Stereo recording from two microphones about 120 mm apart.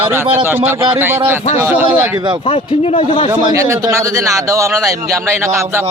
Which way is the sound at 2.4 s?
55° left (ahead or behind).